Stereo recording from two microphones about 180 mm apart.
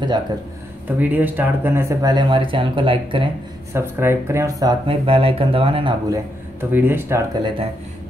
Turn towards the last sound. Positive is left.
turn(degrees=-15)  # may be behind; listen again after turning